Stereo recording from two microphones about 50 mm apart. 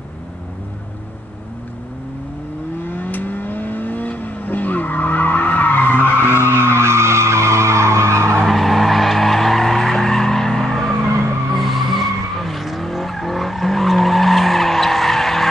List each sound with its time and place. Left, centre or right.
2.8 s vehicle: left
6.5 s vehicle: right
8.4 s skidding: centre
11.5 s vehicle: centre